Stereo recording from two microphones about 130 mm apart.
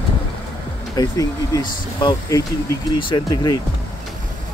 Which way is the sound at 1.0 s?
30° left (ahead or behind).